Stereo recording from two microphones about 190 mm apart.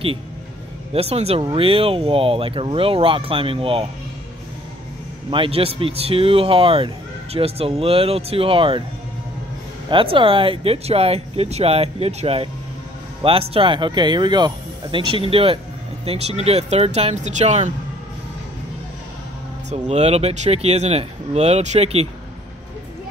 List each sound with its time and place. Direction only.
0.9 s speech: 30° right (ahead or behind)
5.3 s speech: 30° right (ahead or behind)
9.8 s speech: 25° right (ahead or behind)
19.7 s speech: 35° right (ahead or behind)